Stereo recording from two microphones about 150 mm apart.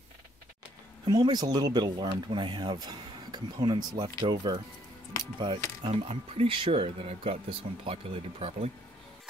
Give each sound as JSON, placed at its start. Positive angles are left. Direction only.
{"t": 1.0, "sound": "speech", "side_deg": -30}
{"t": 5.9, "sound": "speech", "side_deg": -45}